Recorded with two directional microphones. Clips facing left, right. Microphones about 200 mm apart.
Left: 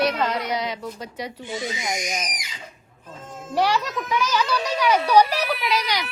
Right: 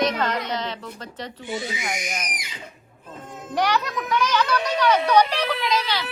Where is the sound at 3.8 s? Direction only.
5° left (ahead or behind).